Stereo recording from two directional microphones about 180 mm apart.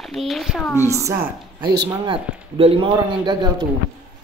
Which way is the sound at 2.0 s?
30° right (ahead or behind).